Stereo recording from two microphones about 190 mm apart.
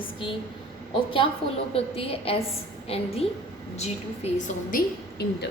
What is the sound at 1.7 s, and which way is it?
A woman's voice, 30° left (ahead or behind).